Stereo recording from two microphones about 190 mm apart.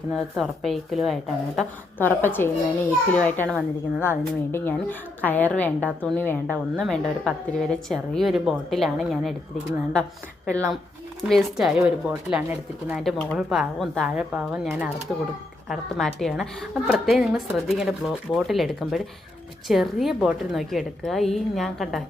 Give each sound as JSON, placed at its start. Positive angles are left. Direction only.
{"t": 0.1, "sound": "a woman's voice", "side_deg": 0}
{"t": 13.0, "sound": "a woman's voice", "side_deg": 0}